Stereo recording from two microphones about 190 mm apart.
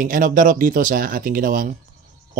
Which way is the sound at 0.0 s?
45° right (ahead or behind).